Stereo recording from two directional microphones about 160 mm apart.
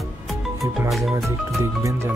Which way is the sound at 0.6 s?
Centre (ahead or behind).